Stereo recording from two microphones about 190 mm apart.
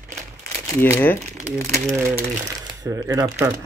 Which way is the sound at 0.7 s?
10° left (ahead or behind).